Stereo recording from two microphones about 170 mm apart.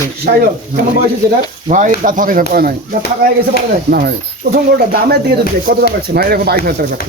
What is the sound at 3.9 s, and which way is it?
Speech, 65° right (ahead or behind).